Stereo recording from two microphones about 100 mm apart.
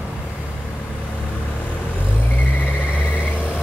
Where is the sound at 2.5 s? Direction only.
15° left (ahead or behind).